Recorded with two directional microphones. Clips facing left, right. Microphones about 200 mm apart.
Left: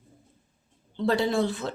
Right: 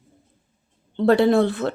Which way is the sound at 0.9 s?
60° right (ahead or behind).